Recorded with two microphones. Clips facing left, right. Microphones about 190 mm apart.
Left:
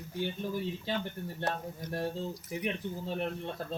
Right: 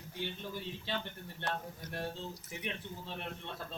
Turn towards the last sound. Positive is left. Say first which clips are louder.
# left 7 dB
turn(degrees=45)  # may be behind; listen again after turning